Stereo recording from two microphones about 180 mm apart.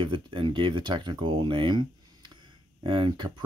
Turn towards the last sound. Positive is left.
turn(degrees=-25)  # may be behind; listen again after turning